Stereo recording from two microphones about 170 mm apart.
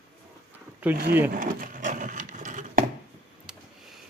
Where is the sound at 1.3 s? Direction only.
55° right (ahead or behind).